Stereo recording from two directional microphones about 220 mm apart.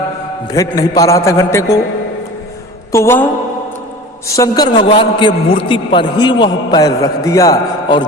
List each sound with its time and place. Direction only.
0.4 s a man's voice: 15° left (ahead or behind)
2.9 s a man's voice: 10° left (ahead or behind)
4.3 s a man's voice: 15° left (ahead or behind)